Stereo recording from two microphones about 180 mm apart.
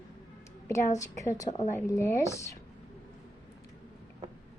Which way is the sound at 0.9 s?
20° left (ahead or behind).